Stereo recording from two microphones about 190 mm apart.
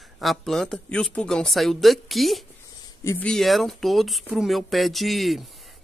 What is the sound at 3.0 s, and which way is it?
Speech, 15° left (ahead or behind).